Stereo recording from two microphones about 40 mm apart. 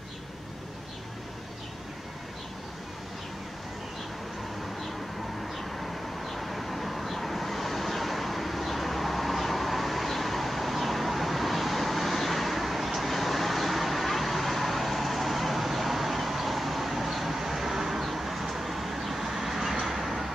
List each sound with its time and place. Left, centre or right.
5.8 s vehicle: centre